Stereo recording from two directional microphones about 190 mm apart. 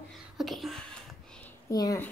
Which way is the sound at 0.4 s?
Centre (ahead or behind).